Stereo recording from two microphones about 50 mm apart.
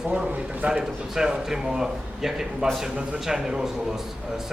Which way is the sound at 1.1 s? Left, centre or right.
Centre.